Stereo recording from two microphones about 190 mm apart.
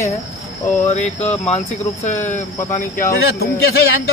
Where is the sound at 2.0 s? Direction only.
40° left (ahead or behind).